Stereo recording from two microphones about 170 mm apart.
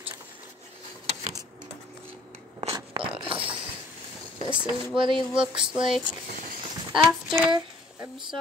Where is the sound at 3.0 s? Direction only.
30° right (ahead or behind).